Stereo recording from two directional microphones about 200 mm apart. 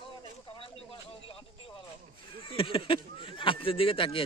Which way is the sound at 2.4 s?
25° left (ahead or behind).